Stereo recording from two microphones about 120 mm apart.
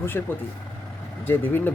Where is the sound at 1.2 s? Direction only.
15° left (ahead or behind).